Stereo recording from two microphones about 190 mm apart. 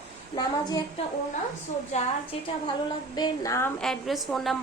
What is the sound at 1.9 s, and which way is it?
Speech, 35° left (ahead or behind).